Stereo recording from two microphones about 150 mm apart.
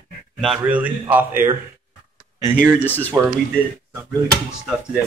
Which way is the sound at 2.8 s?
10° left (ahead or behind).